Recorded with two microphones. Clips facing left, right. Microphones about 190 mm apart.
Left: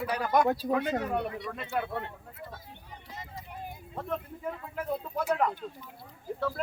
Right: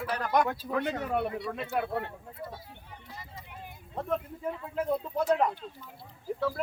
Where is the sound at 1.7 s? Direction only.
5° right (ahead or behind).